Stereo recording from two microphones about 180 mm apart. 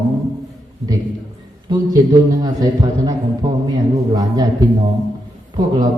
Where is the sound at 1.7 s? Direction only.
20° right (ahead or behind).